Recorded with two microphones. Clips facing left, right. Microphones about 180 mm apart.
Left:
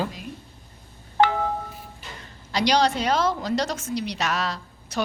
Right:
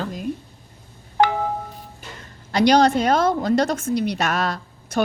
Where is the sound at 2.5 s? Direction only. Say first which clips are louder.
Right 6 dB; 55° right (ahead or behind).